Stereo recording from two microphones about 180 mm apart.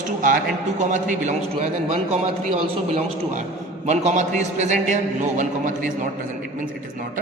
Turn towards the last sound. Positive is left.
turn(degrees=-45)  # may be behind; listen again after turning